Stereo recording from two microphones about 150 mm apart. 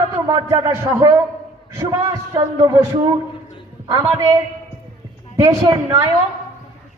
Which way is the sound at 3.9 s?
20° right (ahead or behind).